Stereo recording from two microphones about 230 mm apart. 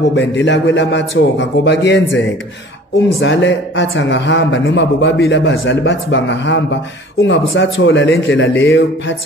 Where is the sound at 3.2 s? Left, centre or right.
Left.